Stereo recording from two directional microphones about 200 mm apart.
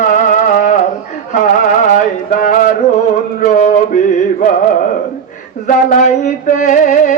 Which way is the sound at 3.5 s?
40° left (ahead or behind).